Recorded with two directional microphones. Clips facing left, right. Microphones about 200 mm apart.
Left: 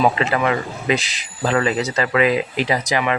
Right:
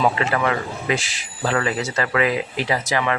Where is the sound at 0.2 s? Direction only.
20° left (ahead or behind).